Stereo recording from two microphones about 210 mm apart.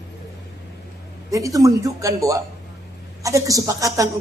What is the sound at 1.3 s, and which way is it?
A man's voice, 15° right (ahead or behind).